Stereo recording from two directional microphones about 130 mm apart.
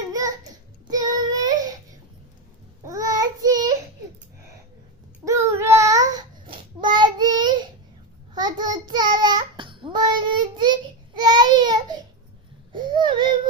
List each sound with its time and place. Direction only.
0.1 s child singing: 30° right (ahead or behind)
2.8 s child singing: 25° right (ahead or behind)
5.2 s child singing: 20° right (ahead or behind)
12.7 s a sound: 35° right (ahead or behind)